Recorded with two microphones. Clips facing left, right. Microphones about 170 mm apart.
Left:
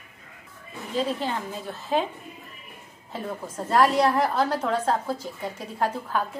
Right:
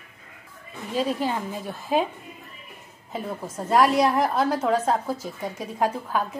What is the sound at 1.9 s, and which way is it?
Speech, 10° right (ahead or behind).